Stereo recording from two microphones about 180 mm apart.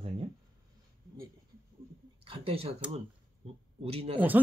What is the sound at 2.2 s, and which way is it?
Speech, 30° right (ahead or behind).